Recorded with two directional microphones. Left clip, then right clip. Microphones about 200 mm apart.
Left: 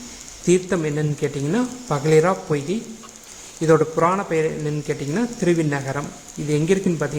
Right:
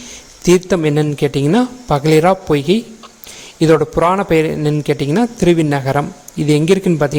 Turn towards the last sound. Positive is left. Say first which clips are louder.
# right 7 dB
turn(degrees=-40)  # may be behind; listen again after turning